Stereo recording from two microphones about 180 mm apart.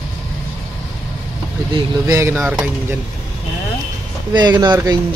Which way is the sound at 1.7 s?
15° right (ahead or behind).